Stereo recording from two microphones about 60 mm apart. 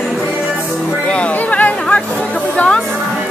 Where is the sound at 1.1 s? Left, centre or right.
Left.